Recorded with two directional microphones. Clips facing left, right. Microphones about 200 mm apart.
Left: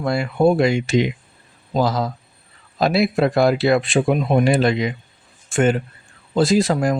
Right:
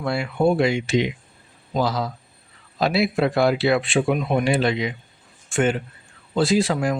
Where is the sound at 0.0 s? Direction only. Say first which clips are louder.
Left 3 dB; 45° left (ahead or behind).